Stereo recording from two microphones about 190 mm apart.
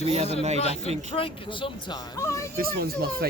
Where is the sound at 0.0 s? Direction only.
35° right (ahead or behind).